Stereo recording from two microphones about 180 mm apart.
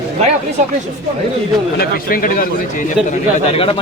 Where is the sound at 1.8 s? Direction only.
50° left (ahead or behind).